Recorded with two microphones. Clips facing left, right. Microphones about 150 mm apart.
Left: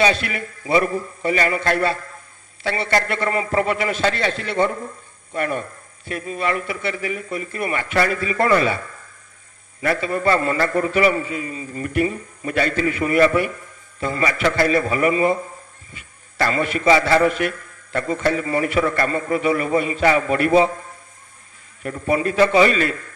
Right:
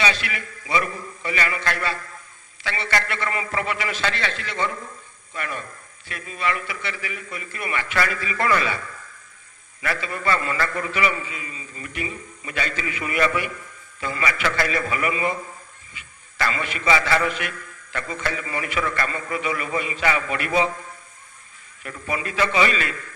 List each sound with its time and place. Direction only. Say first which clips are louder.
0.0 s a man's voice: left 6 dB; 45° left (ahead or behind)
21.8 s a man's voice: left 9 dB; 40° left (ahead or behind)